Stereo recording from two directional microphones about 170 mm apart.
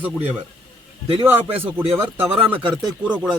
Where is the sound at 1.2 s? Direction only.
15° right (ahead or behind).